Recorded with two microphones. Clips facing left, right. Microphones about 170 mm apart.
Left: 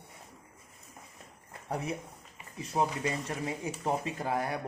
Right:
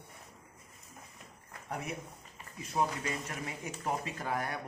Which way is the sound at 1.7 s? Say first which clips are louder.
Left 4 dB; 35° left (ahead or behind).